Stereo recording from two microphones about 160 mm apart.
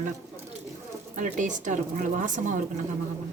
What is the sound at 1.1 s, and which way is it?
Speech, 55° right (ahead or behind).